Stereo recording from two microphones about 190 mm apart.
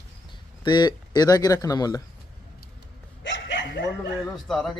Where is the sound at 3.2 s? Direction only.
70° left (ahead or behind).